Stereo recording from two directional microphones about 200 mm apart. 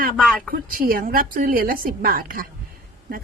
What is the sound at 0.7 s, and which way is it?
A woman's voice, 45° right (ahead or behind).